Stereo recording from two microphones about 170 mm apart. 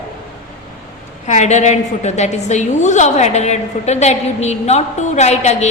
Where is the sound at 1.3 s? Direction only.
45° left (ahead or behind).